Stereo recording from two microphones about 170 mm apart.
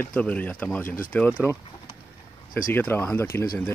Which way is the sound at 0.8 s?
55° left (ahead or behind).